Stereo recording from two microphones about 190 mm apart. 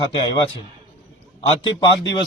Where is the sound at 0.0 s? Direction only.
25° left (ahead or behind).